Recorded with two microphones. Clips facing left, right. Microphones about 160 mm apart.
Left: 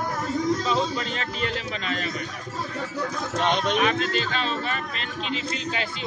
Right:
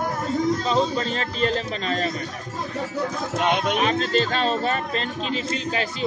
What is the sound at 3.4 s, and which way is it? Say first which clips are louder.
Speech: right 1 dB; 10° right (ahead or behind).